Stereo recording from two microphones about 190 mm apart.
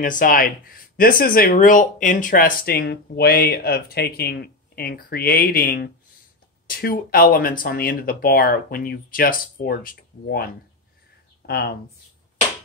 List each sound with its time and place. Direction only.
0.0 s speech: 45° left (ahead or behind)